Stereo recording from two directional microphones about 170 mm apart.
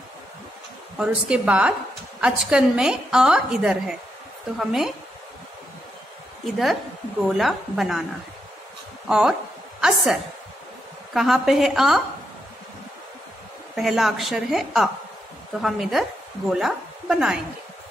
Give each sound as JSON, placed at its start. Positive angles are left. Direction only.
{"t": 0.9, "sound": "a woman's voice", "side_deg": -5}
{"t": 6.4, "sound": "a woman's voice", "side_deg": 0}
{"t": 9.0, "sound": "a woman's voice", "side_deg": -5}
{"t": 11.1, "sound": "a woman's voice", "side_deg": 0}
{"t": 13.7, "sound": "a woman's voice", "side_deg": 0}